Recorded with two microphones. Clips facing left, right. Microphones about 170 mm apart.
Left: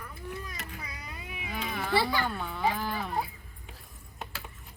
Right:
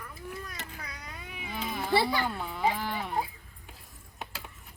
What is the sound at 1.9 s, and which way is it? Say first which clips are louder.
Speech: right 1 dB; 20° right (ahead or behind).